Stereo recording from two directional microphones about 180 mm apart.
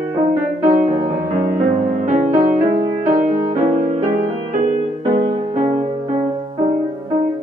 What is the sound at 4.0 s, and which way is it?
Music, 35° right (ahead or behind).